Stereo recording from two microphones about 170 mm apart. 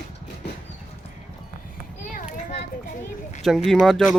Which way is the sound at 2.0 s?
50° left (ahead or behind).